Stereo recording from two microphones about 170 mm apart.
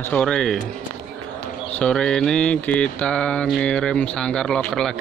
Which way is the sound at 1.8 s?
5° left (ahead or behind).